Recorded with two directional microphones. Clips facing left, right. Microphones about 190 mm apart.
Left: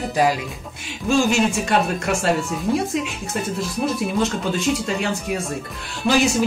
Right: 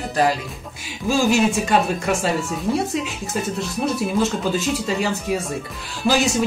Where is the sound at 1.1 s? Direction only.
Centre (ahead or behind).